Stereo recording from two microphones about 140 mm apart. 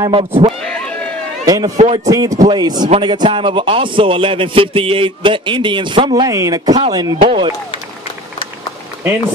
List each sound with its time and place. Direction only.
0.0 s a man's voice: 40° right (ahead or behind)
0.7 s a sound: 5° left (ahead or behind)
1.4 s a man's voice: 25° right (ahead or behind)